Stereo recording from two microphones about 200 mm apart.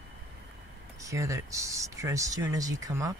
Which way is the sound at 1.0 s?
15° right (ahead or behind).